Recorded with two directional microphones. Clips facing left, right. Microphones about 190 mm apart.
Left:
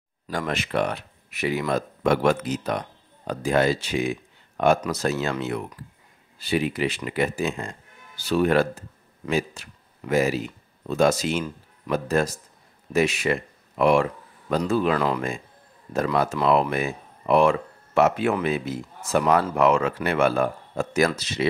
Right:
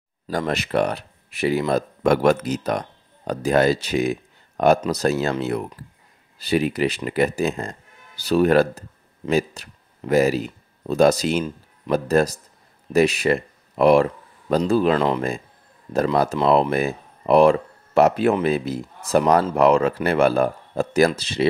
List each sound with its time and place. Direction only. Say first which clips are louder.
0.3 s speech: right 4 dB; 35° right (ahead or behind)
15.9 s speech: right 3 dB; 35° right (ahead or behind)